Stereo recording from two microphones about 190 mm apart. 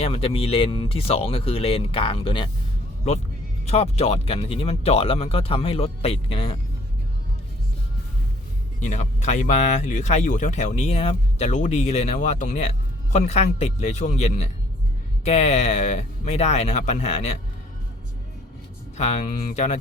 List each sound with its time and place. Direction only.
0.0 s speech: 30° left (ahead or behind)
3.7 s speech: 30° left (ahead or behind)
8.8 s speech: 40° left (ahead or behind)
18.9 s speech: 35° left (ahead or behind)